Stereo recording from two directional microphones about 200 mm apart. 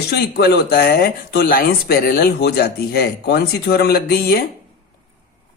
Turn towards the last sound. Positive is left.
turn(degrees=50)  # may be behind; listen again after turning